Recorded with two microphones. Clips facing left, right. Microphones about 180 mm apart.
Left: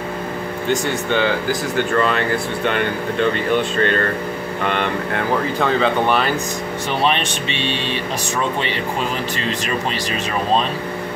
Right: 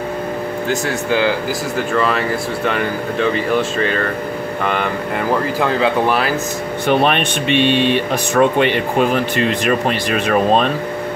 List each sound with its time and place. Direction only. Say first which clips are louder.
0.7 s speech: even; centre (ahead or behind)
6.9 s speech: right 5 dB; 55° right (ahead or behind)